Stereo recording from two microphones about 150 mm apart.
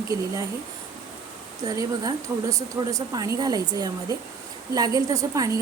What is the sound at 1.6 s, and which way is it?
A woman's voice, 25° right (ahead or behind).